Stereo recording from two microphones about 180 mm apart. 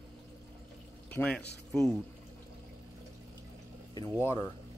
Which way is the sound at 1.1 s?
10° left (ahead or behind).